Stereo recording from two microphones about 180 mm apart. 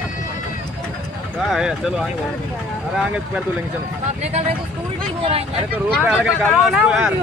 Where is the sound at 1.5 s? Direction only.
Centre (ahead or behind).